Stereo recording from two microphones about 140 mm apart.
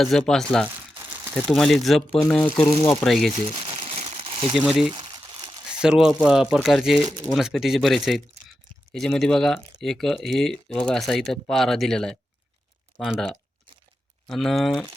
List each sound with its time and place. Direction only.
0.0 s speech: 5° left (ahead or behind)
0.9 s crumpling: 15° right (ahead or behind)
1.4 s speech: centre (ahead or behind)
3.3 s crumpling: 40° right (ahead or behind)
4.5 s speech: 5° right (ahead or behind)
4.9 s crumpling: 30° right (ahead or behind)
5.8 s speech: 5° right (ahead or behind)
14.3 s speech: centre (ahead or behind)